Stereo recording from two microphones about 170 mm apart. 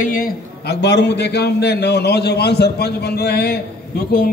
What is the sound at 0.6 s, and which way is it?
A man's voice, 85° left.